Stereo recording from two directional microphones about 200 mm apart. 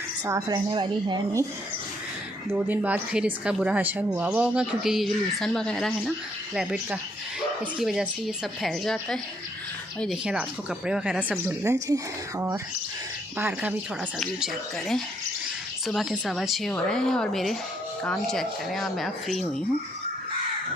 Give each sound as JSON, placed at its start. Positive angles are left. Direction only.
{"t": 0.3, "sound": "a woman's voice", "side_deg": -20}
{"t": 2.5, "sound": "a woman's voice", "side_deg": -10}
{"t": 13.4, "sound": "a woman's voice", "side_deg": -5}